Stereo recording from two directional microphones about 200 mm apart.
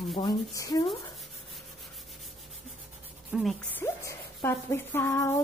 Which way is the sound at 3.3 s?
5° right (ahead or behind).